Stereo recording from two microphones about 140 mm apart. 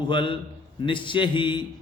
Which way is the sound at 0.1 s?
35° left (ahead or behind).